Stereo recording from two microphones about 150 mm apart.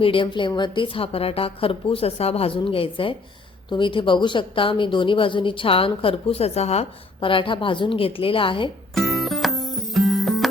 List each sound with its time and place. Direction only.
0.0 s a woman's voice: 35° left (ahead or behind)
9.0 s music: centre (ahead or behind)